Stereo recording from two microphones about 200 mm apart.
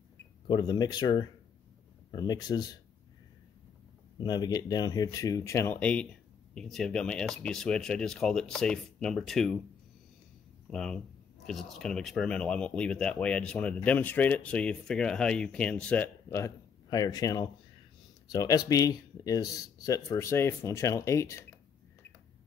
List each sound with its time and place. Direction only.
0.5 s speech: 20° left (ahead or behind)
4.2 s speech: 20° left (ahead or behind); by 9.6 s centre (ahead or behind)
10.7 s speech: 5° left (ahead or behind)